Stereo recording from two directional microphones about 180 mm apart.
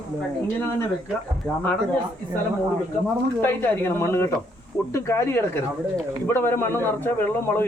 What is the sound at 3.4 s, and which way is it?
A man's voice, 10° left (ahead or behind).